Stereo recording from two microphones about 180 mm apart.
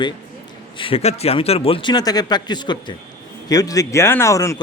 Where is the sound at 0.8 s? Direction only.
30° left (ahead or behind).